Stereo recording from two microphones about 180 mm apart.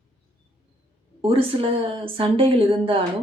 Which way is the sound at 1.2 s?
30° right (ahead or behind).